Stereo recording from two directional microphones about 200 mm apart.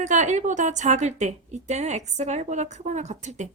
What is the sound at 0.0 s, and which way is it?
A woman's voice, 35° right (ahead or behind).